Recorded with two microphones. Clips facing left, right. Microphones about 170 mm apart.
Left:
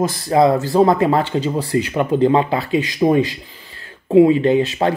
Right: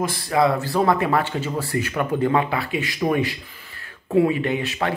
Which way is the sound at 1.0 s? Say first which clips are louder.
Left 5 dB; 20° left (ahead or behind).